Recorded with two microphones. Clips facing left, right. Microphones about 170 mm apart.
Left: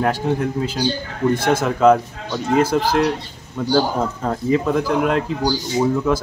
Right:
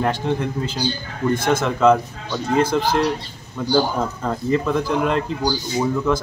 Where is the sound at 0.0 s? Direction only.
5° left (ahead or behind).